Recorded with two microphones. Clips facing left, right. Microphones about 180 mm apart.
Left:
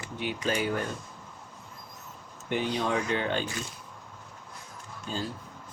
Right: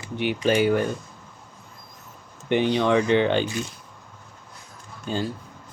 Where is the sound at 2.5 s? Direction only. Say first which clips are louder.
Right 8 dB; 75° right (ahead or behind).